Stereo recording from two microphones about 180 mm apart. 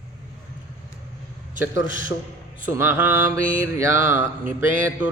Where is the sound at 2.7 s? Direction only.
15° right (ahead or behind).